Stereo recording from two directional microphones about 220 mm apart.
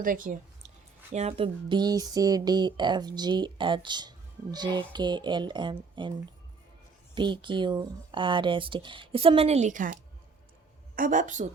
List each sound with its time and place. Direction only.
0.0 s speech: 40° right (ahead or behind)
1.1 s speech: 30° right (ahead or behind)